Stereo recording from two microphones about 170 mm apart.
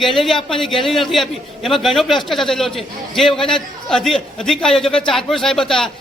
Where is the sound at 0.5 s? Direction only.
Centre (ahead or behind).